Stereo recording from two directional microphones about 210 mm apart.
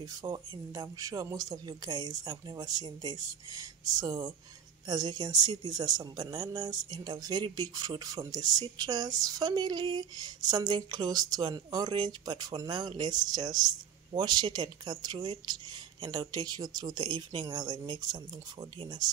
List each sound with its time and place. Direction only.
0.0 s speech: 20° right (ahead or behind)